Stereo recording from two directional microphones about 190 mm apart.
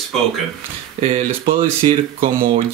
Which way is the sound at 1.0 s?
30° right (ahead or behind).